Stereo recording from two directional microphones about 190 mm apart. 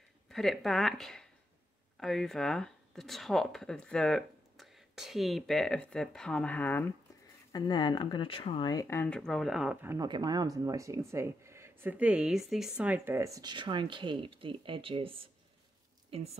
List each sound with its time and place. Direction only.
0.3 s speech: centre (ahead or behind)
7.5 s speech: 20° left (ahead or behind)
8.8 s speech: 10° left (ahead or behind); by 10.0 s 10° right (ahead or behind)
10.0 s a woman's voice: 20° right (ahead or behind)